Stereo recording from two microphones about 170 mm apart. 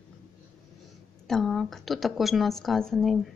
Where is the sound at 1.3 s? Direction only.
Centre (ahead or behind).